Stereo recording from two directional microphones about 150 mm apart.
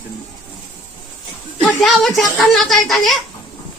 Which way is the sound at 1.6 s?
Centre (ahead or behind).